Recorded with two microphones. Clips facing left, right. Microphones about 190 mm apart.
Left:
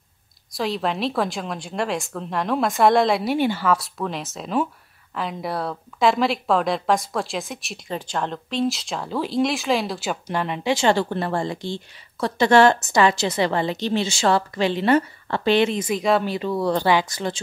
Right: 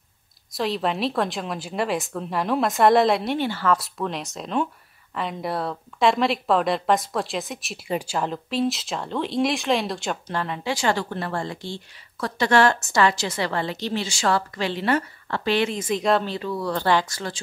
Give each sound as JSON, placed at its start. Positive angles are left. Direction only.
{"t": 0.6, "sound": "a woman's voice", "side_deg": 0}
{"t": 3.4, "sound": "speech", "side_deg": 15}
{"t": 3.7, "sound": "a woman's voice", "side_deg": 0}
{"t": 10.3, "sound": "a woman's voice", "side_deg": 20}
{"t": 15.9, "sound": "speech", "side_deg": 5}
{"t": 16.4, "sound": "a woman's voice", "side_deg": 25}